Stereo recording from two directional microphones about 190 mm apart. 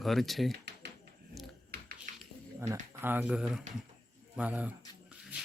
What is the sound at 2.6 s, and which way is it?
Speech, 15° right (ahead or behind).